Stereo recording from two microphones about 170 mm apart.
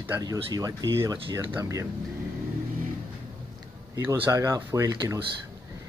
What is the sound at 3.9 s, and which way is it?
Speech, 20° right (ahead or behind).